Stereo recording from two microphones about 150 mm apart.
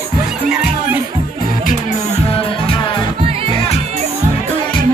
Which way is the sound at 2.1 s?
40° left (ahead or behind).